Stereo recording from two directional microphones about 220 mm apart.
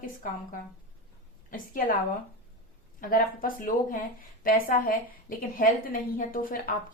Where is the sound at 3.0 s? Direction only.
40° left (ahead or behind).